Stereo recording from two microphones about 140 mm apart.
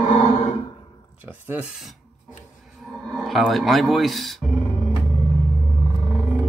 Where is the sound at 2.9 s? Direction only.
Centre (ahead or behind).